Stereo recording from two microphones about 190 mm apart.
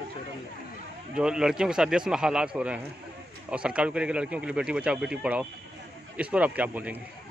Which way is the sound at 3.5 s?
5° right (ahead or behind).